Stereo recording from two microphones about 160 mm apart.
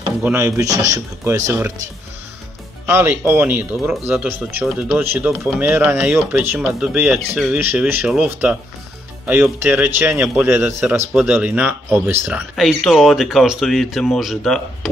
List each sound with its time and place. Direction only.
0.2 s speech: 10° right (ahead or behind)
2.9 s speech: 15° right (ahead or behind); by 14.9 s 5° left (ahead or behind)